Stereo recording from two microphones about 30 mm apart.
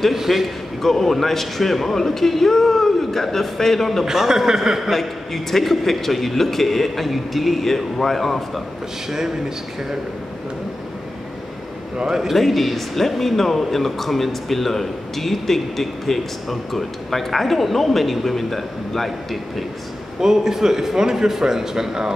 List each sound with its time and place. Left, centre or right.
0.1 s a man's voice: centre
0.8 s speech: centre
4.0 s a man's voice: centre
4.9 s speech: centre
12.0 s a man's voice: right
12.4 s speech: centre
20.2 s a man's voice: centre